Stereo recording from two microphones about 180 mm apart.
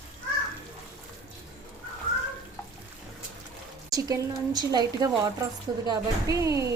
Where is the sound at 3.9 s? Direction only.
20° right (ahead or behind).